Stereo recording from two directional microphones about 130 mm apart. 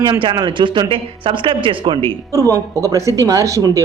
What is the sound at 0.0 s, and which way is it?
Speech, 40° right (ahead or behind).